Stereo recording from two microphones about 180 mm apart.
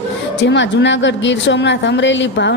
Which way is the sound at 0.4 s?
80° left.